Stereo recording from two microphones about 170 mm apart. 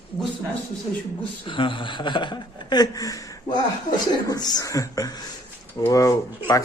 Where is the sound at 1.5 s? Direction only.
30° left (ahead or behind).